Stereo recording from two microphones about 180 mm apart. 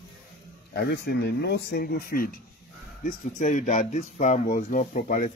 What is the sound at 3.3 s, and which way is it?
Speech, 40° left (ahead or behind).